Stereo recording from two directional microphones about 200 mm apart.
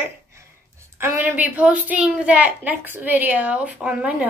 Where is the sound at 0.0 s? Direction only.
15° right (ahead or behind).